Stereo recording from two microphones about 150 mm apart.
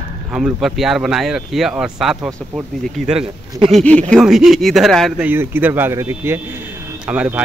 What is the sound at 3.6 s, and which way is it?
Speech, 5° left (ahead or behind).